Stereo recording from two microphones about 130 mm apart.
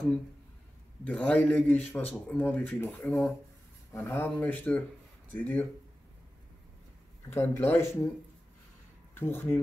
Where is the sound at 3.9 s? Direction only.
20° left (ahead or behind).